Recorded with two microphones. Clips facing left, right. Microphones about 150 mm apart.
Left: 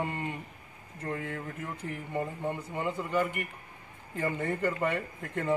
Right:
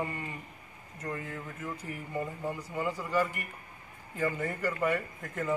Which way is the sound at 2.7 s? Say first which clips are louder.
Right 1 dB; 20° left (ahead or behind).